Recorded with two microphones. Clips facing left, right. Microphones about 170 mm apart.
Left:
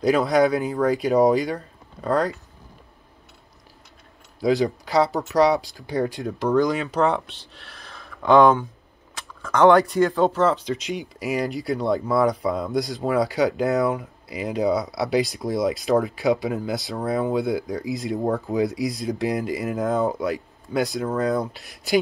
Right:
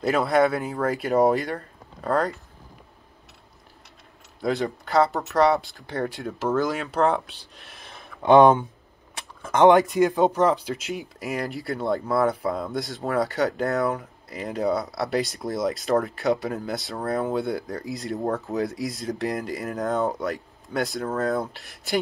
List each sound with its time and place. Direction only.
0.0 s speech: centre (ahead or behind)
4.4 s speech: centre (ahead or behind)
7.7 s a sound: 20° right (ahead or behind)
9.4 s speech: 20° right (ahead or behind); by 22.0 s centre (ahead or behind)